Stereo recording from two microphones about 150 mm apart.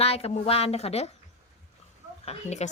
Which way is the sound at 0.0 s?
40° left (ahead or behind).